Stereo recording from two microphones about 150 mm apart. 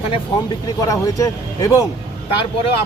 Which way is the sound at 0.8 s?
20° left (ahead or behind).